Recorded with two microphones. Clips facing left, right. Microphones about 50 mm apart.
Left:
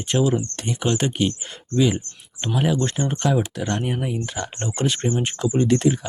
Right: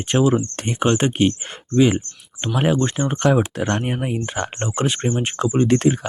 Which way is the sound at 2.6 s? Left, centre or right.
Right.